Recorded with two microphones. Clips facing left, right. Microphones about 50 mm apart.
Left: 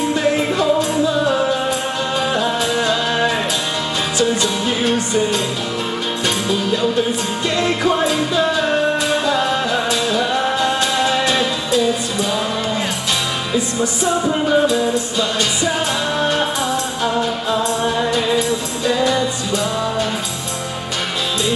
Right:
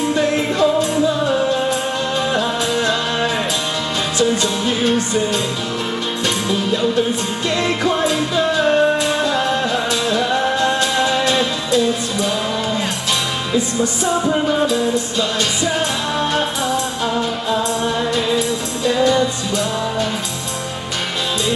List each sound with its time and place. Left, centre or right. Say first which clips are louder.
0.1 s music: even; centre
7.4 s music: left 1 dB; centre
13.5 s music: right 2 dB; centre